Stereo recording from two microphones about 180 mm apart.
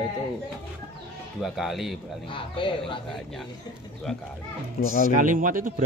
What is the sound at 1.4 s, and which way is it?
Speech, centre (ahead or behind).